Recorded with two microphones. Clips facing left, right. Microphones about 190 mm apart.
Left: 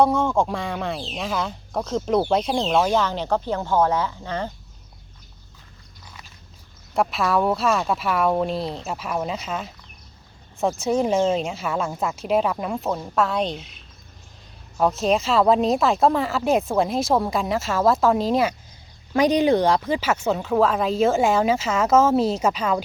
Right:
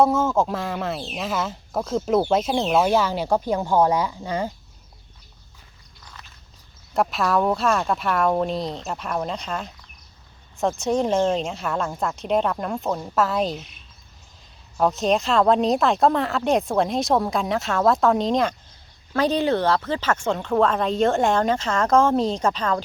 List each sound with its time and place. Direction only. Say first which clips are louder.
0.0 s speech: even; centre (ahead or behind)
6.9 s speech: even; centre (ahead or behind)
14.8 s speech: even; centre (ahead or behind)